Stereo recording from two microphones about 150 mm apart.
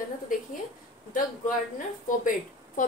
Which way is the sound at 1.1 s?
60° left (ahead or behind).